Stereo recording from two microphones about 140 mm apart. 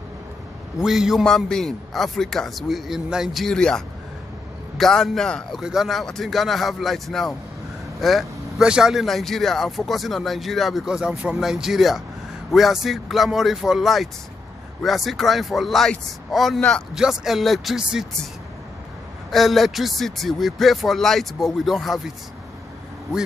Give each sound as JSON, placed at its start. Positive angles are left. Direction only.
{"t": 0.7, "sound": "speech", "side_deg": -5}
{"t": 19.3, "sound": "speech", "side_deg": 0}